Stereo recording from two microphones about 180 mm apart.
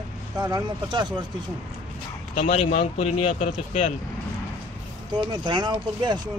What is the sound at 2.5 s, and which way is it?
Speech, 40° left (ahead or behind).